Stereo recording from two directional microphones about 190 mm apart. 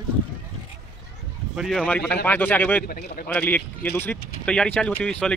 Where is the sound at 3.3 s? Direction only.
10° left (ahead or behind).